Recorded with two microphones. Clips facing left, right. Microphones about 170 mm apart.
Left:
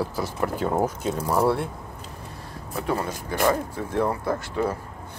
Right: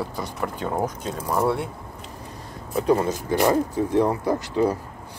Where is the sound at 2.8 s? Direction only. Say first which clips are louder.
Right 7 dB; 20° right (ahead or behind).